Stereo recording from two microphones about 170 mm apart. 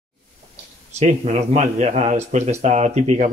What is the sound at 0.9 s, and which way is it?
Speech, 40° right (ahead or behind).